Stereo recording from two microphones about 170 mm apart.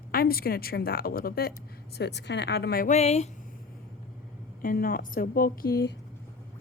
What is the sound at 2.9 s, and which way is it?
Speech, 40° left (ahead or behind).